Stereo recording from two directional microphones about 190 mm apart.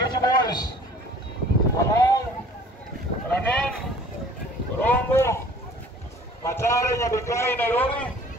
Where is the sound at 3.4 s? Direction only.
5° left (ahead or behind).